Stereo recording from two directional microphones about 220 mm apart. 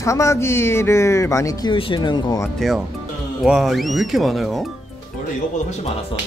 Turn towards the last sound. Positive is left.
turn(degrees=0)  # may be behind; listen again after turning